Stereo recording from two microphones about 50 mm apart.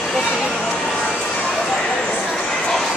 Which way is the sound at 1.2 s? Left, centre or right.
Left.